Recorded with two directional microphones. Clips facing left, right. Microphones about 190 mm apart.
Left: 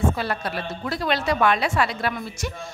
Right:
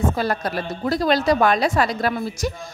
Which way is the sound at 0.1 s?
40° right (ahead or behind).